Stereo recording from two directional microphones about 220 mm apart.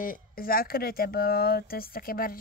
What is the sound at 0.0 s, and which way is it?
Speech, 40° left (ahead or behind).